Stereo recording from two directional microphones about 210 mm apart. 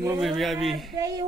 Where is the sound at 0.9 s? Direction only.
15° right (ahead or behind).